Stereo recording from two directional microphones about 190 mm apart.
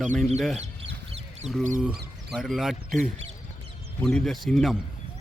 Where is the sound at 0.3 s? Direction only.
5° right (ahead or behind).